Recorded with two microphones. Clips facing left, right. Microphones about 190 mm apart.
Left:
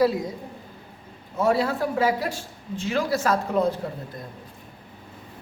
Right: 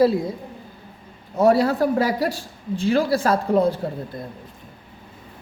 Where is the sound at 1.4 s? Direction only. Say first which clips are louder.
Right 5 dB; 40° right (ahead or behind).